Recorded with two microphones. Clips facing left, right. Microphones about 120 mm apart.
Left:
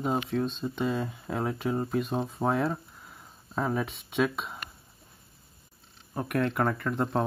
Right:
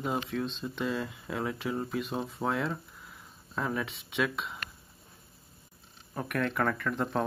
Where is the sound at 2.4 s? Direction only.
15° left (ahead or behind).